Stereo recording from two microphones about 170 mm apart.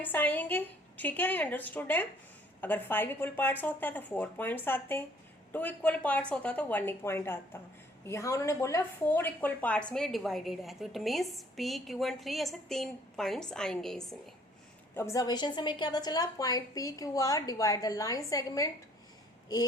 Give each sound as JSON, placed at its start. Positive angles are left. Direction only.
{"t": 0.0, "sound": "speech", "side_deg": 10}
{"t": 14.9, "sound": "a woman's voice", "side_deg": 15}